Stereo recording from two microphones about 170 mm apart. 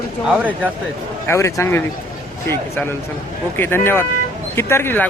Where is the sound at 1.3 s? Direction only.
15° left (ahead or behind).